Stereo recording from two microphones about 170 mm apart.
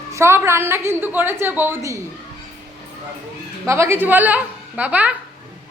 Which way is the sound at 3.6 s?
15° right (ahead or behind).